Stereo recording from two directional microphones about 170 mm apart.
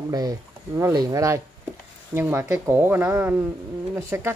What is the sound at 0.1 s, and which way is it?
Speech, 20° right (ahead or behind).